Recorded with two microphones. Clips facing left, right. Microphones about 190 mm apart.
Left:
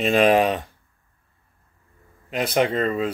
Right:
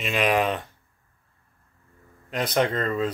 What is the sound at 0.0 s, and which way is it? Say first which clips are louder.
Speech: left 7 dB; 35° left (ahead or behind).